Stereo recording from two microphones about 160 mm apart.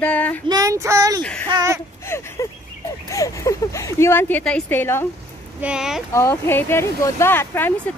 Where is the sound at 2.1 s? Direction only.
15° left (ahead or behind).